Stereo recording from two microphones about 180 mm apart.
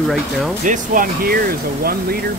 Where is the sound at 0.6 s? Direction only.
45° right (ahead or behind).